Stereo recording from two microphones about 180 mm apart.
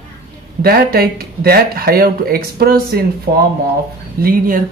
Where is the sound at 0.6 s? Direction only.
55° right (ahead or behind).